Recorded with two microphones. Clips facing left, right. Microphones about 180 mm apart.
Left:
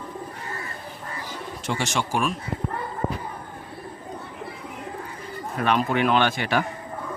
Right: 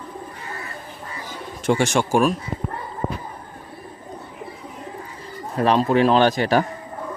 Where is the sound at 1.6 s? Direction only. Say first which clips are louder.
Right 8 dB; 50° right (ahead or behind).